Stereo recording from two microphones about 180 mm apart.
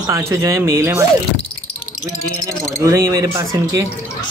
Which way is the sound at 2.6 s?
15° right (ahead or behind).